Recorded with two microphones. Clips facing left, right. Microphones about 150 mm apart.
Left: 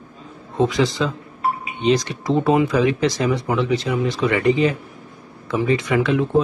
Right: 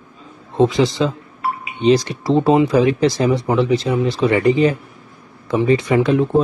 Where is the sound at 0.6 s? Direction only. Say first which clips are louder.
Right 4 dB; 30° right (ahead or behind).